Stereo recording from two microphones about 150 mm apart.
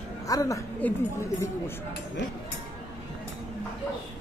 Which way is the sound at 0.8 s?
10° left (ahead or behind).